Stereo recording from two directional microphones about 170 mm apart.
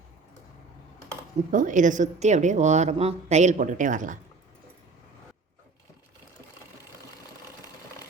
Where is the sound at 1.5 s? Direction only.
50° right (ahead or behind).